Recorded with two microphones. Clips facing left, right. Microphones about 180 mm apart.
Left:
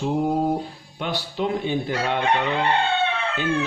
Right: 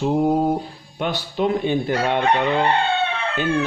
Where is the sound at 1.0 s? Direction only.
55° right (ahead or behind).